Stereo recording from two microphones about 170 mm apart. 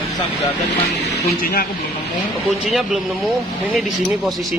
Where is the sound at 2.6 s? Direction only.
Centre (ahead or behind).